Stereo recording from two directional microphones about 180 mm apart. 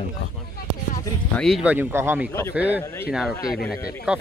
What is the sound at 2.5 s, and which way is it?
Speech, 10° right (ahead or behind).